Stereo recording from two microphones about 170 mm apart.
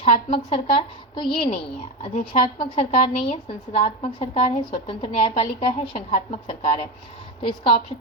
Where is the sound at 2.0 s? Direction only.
40° left (ahead or behind).